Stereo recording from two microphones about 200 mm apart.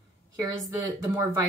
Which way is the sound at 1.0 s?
15° right (ahead or behind).